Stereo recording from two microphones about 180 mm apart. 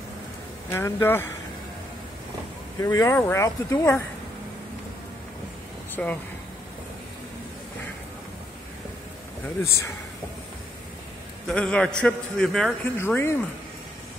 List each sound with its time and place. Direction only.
0.7 s speech: 15° left (ahead or behind)
2.8 s speech: 20° left (ahead or behind)
6.0 s a man's voice: 5° left (ahead or behind)
11.4 s a man's voice: 5° left (ahead or behind)
12.9 s speech: 15° left (ahead or behind)